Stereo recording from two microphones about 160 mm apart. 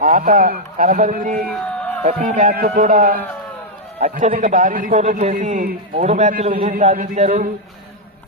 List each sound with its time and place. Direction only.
0.0 s speech: 55° right (ahead or behind)
1.5 s a sound: 5° left (ahead or behind)
2.0 s a man's voice: 50° right (ahead or behind)